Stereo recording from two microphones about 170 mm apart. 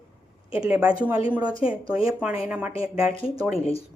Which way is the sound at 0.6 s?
5° right (ahead or behind).